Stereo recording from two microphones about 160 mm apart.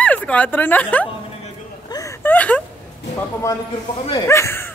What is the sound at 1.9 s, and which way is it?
Whimper, 20° left (ahead or behind).